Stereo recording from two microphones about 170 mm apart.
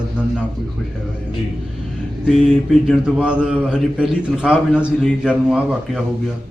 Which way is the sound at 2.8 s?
5° right (ahead or behind).